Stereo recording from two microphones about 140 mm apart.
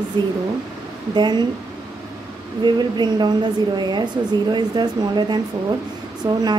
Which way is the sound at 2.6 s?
30° right (ahead or behind).